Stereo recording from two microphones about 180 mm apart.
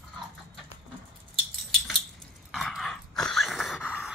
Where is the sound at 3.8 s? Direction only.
5° right (ahead or behind).